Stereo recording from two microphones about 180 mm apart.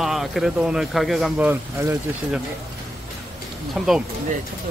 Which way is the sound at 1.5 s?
15° right (ahead or behind).